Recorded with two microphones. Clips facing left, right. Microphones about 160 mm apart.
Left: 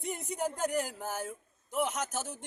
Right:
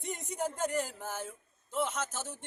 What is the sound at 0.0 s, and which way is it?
Speech, 5° left (ahead or behind).